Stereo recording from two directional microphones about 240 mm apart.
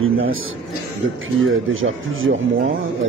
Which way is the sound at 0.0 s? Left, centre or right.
Right.